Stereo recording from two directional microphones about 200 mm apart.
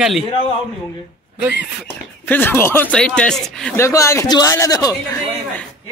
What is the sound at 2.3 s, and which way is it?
A man's voice, 10° left (ahead or behind).